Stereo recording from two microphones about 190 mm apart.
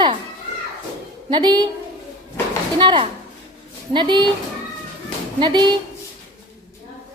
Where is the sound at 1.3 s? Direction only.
25° right (ahead or behind).